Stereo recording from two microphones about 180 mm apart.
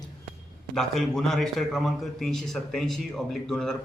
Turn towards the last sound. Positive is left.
turn(degrees=5)  # may be behind; listen again after turning